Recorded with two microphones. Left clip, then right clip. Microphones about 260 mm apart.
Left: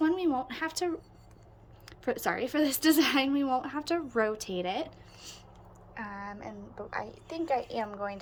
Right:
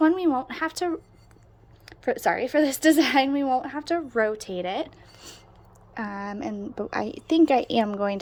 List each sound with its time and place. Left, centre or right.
0.0 s speech: centre
5.9 s a woman's voice: right